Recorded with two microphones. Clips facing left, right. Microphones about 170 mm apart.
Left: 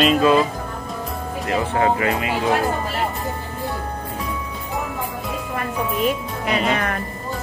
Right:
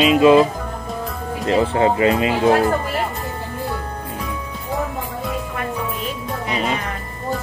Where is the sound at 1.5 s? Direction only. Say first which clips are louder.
Right 3 dB; 30° right (ahead or behind).